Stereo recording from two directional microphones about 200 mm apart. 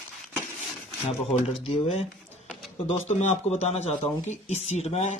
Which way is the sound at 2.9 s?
35° left (ahead or behind).